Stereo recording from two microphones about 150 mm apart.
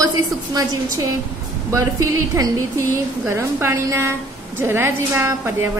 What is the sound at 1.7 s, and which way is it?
A woman's voice, 20° right (ahead or behind).